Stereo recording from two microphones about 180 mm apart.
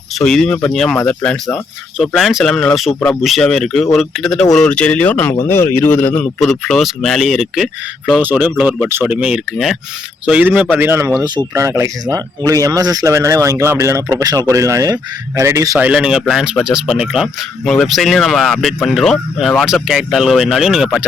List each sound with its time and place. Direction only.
0.1 s speech: centre (ahead or behind); by 15.8 s 15° right (ahead or behind)
15.8 s speech: 5° right (ahead or behind)